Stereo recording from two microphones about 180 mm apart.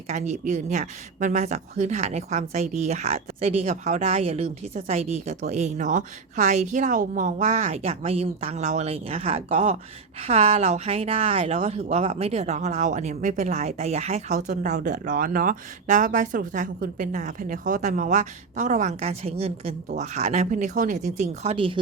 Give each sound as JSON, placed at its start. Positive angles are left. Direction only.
{"t": 0.1, "sound": "speech", "side_deg": -40}
{"t": 21.5, "sound": "speech", "side_deg": -30}